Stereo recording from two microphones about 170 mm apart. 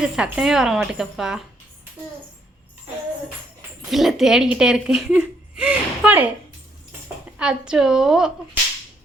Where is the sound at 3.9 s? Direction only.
Centre (ahead or behind).